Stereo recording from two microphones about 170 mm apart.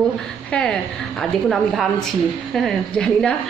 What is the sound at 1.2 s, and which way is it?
A woman's voice, centre (ahead or behind).